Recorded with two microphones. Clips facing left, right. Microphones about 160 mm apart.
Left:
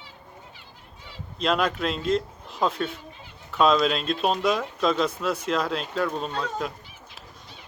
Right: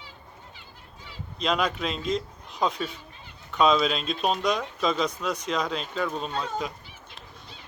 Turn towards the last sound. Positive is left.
turn(degrees=0)  # may be behind; listen again after turning